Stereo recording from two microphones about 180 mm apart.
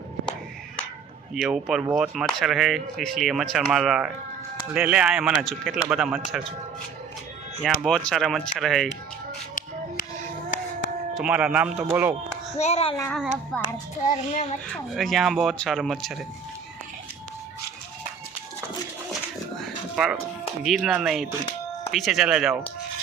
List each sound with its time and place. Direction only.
1.3 s speech: 5° right (ahead or behind)
7.6 s speech: centre (ahead or behind)
11.1 s speech: 5° right (ahead or behind)
12.5 s child singing: 35° left (ahead or behind)
13.1 s speech: 5° left (ahead or behind)
14.0 s child singing: 40° left (ahead or behind)
14.7 s speech: centre (ahead or behind)
20.0 s speech: centre (ahead or behind)